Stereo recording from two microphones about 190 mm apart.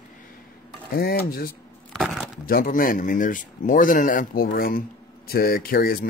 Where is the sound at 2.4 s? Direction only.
50° left (ahead or behind).